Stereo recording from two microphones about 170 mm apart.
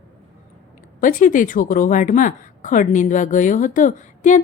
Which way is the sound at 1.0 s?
50° left (ahead or behind).